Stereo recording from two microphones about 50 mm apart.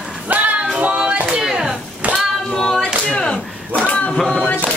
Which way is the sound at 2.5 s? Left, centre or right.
Centre.